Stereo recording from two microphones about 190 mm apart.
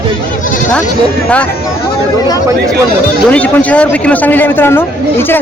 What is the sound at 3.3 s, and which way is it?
A man's voice, 5° left (ahead or behind).